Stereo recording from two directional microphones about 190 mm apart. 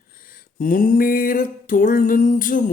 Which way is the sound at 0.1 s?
50° left (ahead or behind).